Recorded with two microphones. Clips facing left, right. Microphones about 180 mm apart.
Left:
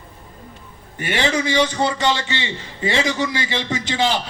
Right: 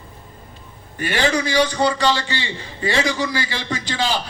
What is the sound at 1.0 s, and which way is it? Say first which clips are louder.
A man's voice: right 1 dB; 20° left (ahead or behind).